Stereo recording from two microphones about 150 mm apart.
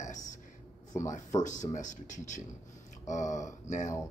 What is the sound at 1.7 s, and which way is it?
Speech, 55° left (ahead or behind).